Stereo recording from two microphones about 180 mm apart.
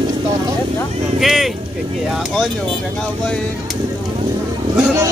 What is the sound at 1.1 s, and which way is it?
Speech, centre (ahead or behind).